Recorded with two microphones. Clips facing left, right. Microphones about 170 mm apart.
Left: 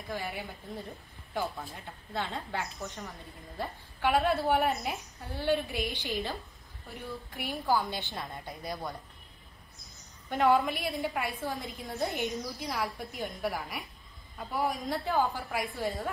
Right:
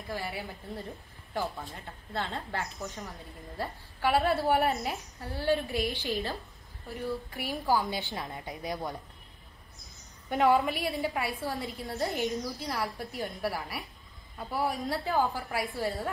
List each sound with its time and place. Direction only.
0.1 s speech: centre (ahead or behind)
7.3 s a woman's voice: 40° right (ahead or behind)
7.8 s a woman's voice: 10° right (ahead or behind)
10.3 s speech: centre (ahead or behind)